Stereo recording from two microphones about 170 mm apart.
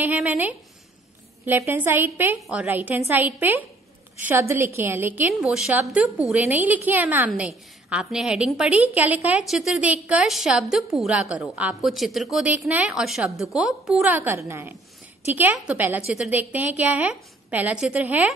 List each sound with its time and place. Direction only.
0.0 s a woman's voice: 10° right (ahead or behind)